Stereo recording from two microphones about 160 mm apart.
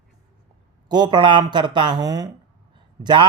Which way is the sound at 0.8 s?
25° right (ahead or behind).